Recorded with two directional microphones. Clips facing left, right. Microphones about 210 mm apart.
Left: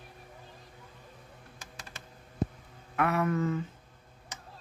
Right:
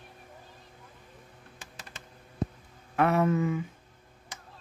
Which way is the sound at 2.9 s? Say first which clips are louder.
Right 4 dB; 30° right (ahead or behind).